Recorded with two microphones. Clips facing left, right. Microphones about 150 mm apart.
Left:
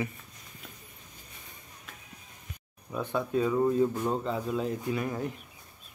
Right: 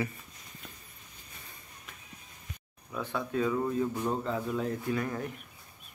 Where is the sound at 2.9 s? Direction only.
15° left (ahead or behind).